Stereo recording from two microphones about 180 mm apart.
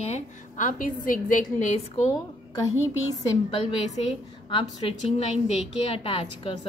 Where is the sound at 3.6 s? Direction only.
30° left (ahead or behind).